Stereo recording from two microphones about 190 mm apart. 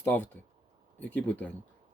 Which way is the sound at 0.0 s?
10° left (ahead or behind).